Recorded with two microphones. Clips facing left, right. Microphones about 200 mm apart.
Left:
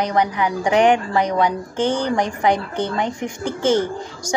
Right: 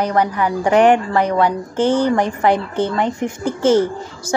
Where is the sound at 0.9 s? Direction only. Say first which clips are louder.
Right 3 dB; 5° right (ahead or behind).